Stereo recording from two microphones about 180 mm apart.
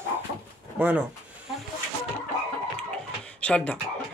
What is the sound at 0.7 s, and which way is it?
Speech, 5° right (ahead or behind).